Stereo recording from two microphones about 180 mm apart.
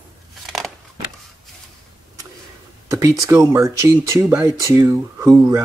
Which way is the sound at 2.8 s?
15° right (ahead or behind).